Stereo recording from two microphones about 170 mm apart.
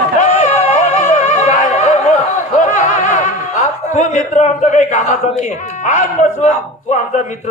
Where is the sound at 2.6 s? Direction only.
45° left (ahead or behind).